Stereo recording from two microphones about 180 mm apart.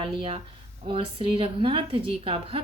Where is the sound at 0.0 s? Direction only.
30° right (ahead or behind).